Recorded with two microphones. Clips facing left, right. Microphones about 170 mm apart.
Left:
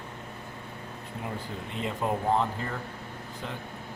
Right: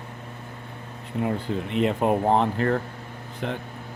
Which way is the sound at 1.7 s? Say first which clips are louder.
Right 8 dB; 70° right (ahead or behind).